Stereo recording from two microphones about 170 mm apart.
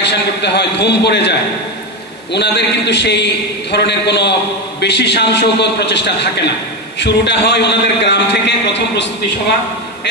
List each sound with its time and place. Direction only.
0.0 s a man's voice: 90° left
2.3 s a man's voice: 85° left